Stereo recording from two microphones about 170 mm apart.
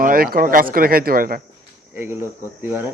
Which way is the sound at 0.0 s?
55° right (ahead or behind).